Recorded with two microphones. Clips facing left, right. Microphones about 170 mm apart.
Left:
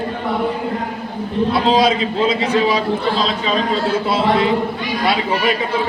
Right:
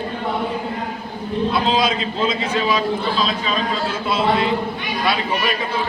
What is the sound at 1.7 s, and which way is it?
Speech, 30° left (ahead or behind).